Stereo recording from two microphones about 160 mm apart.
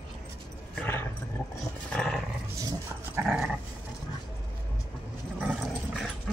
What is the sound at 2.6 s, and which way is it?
Dog, 20° right (ahead or behind).